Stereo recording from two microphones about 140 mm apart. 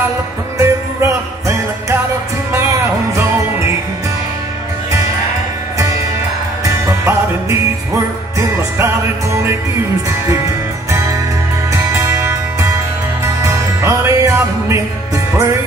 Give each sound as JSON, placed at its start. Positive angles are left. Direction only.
{"t": 0.6, "sound": "music", "side_deg": -20}
{"t": 6.6, "sound": "music", "side_deg": -20}
{"t": 11.7, "sound": "music", "side_deg": -20}